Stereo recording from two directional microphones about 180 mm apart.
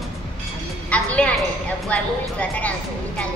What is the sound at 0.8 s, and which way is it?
A woman's voice, 5° left (ahead or behind).